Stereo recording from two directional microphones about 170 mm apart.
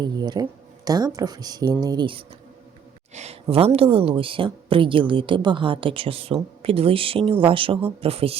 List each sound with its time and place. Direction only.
0.0 s speech: 25° right (ahead or behind)
3.2 s speech: 40° right (ahead or behind)